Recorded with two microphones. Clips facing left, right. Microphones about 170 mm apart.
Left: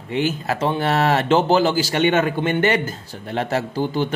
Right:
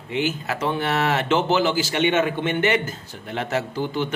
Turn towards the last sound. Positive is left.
turn(degrees=35)  # may be behind; listen again after turning